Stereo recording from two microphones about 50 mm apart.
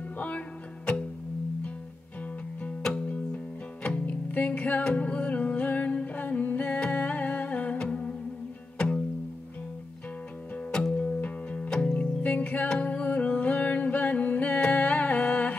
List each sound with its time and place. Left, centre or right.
3.8 s music: left
10.7 s music: centre
12.2 s music: left